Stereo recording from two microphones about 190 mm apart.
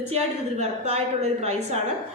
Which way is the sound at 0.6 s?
35° right (ahead or behind).